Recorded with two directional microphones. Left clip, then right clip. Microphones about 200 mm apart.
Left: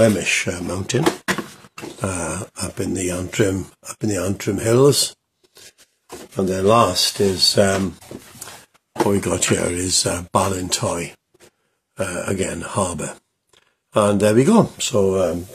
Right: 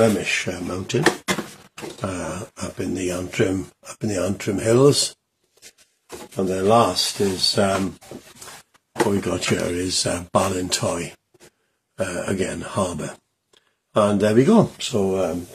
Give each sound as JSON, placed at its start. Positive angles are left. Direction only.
{"t": 0.2, "sound": "speech", "side_deg": 45}
{"t": 6.4, "sound": "speech", "side_deg": 45}
{"t": 9.1, "sound": "speech", "side_deg": 35}